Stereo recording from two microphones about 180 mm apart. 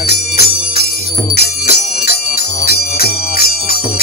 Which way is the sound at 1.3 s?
60° left (ahead or behind).